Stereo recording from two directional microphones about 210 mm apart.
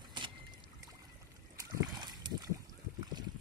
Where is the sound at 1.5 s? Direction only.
20° right (ahead or behind).